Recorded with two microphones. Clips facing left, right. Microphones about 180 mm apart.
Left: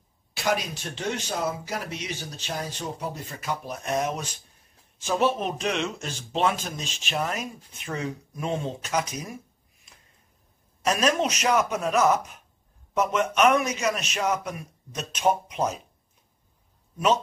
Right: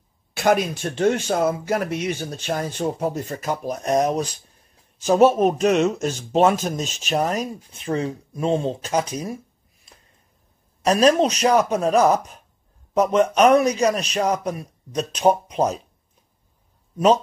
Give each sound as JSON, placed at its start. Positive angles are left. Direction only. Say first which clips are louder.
{"t": 0.3, "sound": "speech", "louder": "right 8 dB", "side_deg": -55}
{"t": 9.9, "sound": "a sound", "louder": "right 5 dB", "side_deg": -35}
{"t": 10.8, "sound": "speech", "louder": "right 7 dB", "side_deg": -35}